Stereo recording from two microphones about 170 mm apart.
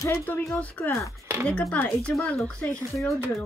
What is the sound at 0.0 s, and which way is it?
Speech, 15° left (ahead or behind).